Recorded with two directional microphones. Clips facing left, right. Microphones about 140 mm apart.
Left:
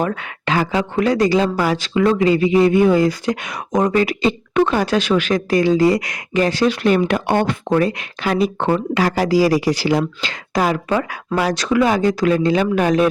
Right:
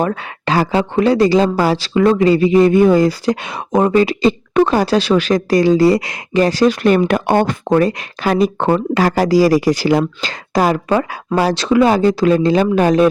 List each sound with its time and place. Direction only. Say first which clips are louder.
0.0 s speech: right 3 dB; 35° right (ahead or behind)